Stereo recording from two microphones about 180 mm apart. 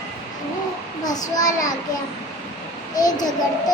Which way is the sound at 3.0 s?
20° left (ahead or behind).